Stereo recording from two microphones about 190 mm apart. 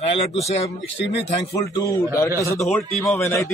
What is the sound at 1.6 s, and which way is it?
Speech, 20° left (ahead or behind).